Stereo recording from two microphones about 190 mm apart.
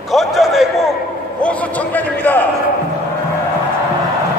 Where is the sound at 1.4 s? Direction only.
5° left (ahead or behind).